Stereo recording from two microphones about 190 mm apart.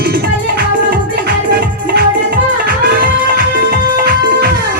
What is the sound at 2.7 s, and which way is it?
Music, 55° right (ahead or behind).